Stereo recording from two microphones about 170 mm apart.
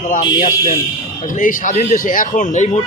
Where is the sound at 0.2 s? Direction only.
25° left (ahead or behind).